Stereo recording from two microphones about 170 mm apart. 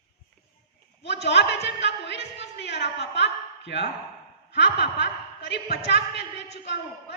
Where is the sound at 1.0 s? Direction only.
90° left.